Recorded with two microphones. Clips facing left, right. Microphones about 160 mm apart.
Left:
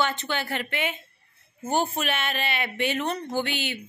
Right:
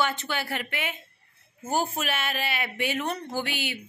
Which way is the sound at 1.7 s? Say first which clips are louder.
Left 2 dB; 5° right (ahead or behind).